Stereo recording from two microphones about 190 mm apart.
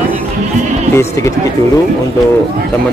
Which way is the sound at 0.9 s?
15° left (ahead or behind).